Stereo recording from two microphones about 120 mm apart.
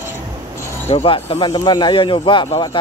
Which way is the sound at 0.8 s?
55° left (ahead or behind).